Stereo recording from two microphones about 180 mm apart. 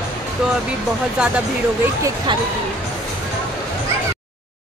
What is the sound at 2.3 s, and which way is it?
Speech, 25° right (ahead or behind).